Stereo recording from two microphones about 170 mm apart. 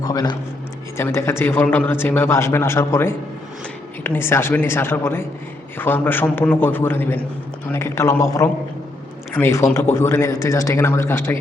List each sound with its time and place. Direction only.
0.0 s a man's voice: 25° left (ahead or behind)